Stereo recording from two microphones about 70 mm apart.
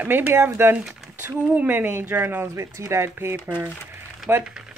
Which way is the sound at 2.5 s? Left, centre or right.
Right.